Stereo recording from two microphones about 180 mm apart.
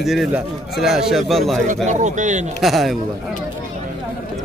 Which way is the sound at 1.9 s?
40° right (ahead or behind).